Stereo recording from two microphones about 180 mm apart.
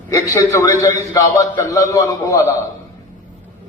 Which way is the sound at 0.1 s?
20° left (ahead or behind).